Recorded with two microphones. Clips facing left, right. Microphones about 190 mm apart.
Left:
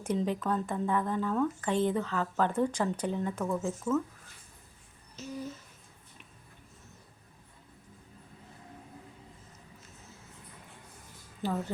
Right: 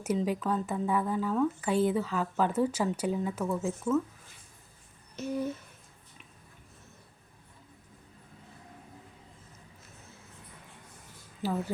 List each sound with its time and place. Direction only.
0.0 s speech: 5° right (ahead or behind)
5.1 s a sound: 60° right (ahead or behind)
11.4 s a woman's voice: 5° right (ahead or behind)